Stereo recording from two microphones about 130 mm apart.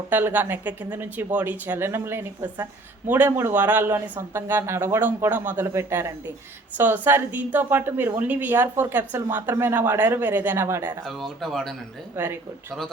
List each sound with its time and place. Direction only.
0.1 s a woman's voice: 15° right (ahead or behind)
11.0 s speech: centre (ahead or behind)
12.1 s a woman's voice: 15° right (ahead or behind)